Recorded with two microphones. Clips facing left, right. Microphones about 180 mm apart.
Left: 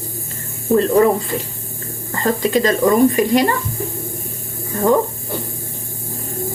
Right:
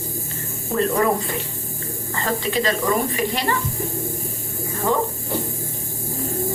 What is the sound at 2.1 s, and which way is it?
Speech, 40° left (ahead or behind).